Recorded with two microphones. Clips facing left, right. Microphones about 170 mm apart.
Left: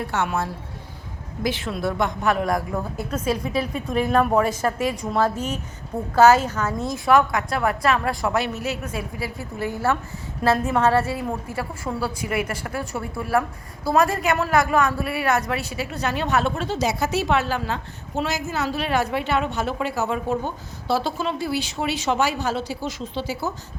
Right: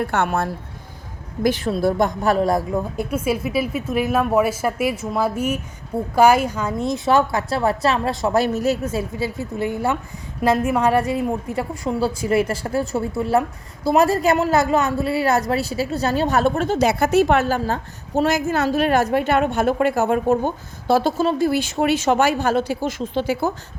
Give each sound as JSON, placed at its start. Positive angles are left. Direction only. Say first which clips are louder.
{"t": 0.0, "sound": "speech", "louder": "right 4 dB", "side_deg": -55}
{"t": 1.5, "sound": "a woman's voice", "louder": "right 6 dB", "side_deg": -40}
{"t": 2.7, "sound": "a woman's voice", "louder": "right 4 dB", "side_deg": -15}
{"t": 8.4, "sound": "a woman's voice", "louder": "right 7 dB", "side_deg": -40}
{"t": 8.8, "sound": "a woman's voice", "louder": "right 6 dB", "side_deg": -30}